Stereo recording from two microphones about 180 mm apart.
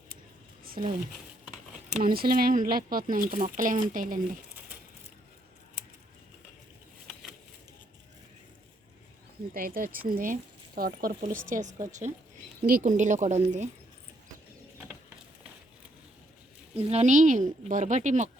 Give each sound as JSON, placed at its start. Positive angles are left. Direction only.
{"t": 0.6, "sound": "a sound", "side_deg": -55}
{"t": 2.0, "sound": "speech", "side_deg": -55}
{"t": 9.5, "sound": "speech", "side_deg": -50}
{"t": 16.9, "sound": "speech", "side_deg": -40}